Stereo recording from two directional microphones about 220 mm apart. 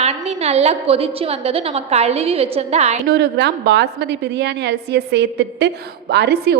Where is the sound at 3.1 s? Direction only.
50° right (ahead or behind).